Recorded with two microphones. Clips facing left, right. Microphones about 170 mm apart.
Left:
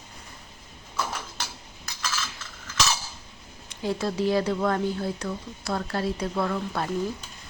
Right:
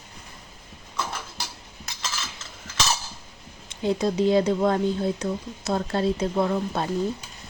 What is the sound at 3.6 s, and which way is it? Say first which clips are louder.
Speech: right 4 dB; 20° right (ahead or behind).